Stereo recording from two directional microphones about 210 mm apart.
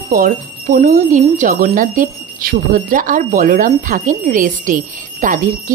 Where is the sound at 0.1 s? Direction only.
40° right (ahead or behind).